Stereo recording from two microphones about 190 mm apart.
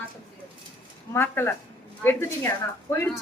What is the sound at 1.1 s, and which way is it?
A woman's voice, 10° left (ahead or behind).